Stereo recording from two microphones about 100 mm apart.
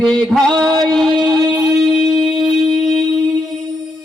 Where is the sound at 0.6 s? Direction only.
45° right (ahead or behind).